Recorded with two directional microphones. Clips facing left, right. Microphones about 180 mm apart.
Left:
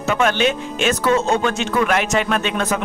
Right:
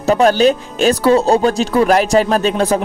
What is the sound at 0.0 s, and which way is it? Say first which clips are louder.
Speech: right 7 dB; 35° right (ahead or behind).